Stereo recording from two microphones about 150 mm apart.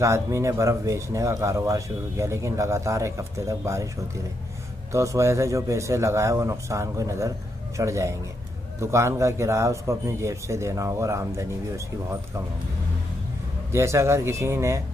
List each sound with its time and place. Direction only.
0.0 s speech: 20° right (ahead or behind)
4.9 s speech: 20° right (ahead or behind)
13.7 s speech: 20° right (ahead or behind)